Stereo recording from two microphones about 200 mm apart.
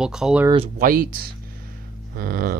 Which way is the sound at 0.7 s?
45° right (ahead or behind).